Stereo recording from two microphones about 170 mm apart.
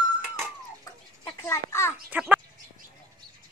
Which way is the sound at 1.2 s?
15° left (ahead or behind).